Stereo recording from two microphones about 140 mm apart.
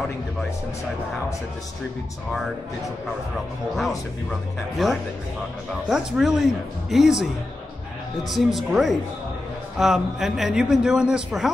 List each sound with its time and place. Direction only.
4.8 s a man's voice: centre (ahead or behind)
8.3 s a man's voice: centre (ahead or behind)